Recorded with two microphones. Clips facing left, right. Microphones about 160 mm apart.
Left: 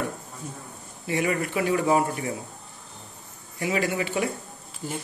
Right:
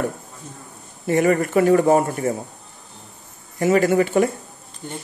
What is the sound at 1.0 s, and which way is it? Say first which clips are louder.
Speech: right 8 dB; 45° right (ahead or behind).